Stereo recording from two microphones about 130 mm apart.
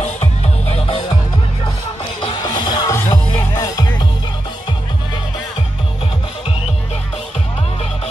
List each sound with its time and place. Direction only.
0.0 s music: 55° left (ahead or behind)
2.4 s music: 30° left (ahead or behind)